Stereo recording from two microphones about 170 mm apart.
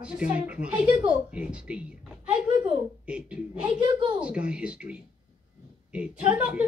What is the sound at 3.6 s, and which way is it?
Speech, 30° right (ahead or behind).